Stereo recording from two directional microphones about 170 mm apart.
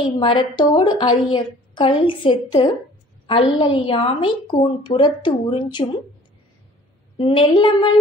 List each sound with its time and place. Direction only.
0.0 s a woman's voice: 30° left (ahead or behind)
7.2 s a woman's voice: 30° left (ahead or behind)